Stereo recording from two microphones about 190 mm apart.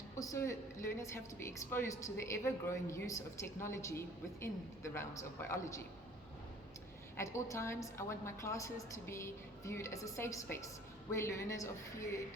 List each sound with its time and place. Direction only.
0.2 s a woman's voice: 15° left (ahead or behind)
7.2 s a woman's voice: 15° left (ahead or behind)